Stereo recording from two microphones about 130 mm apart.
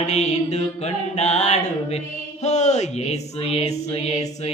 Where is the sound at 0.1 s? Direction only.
60° left (ahead or behind).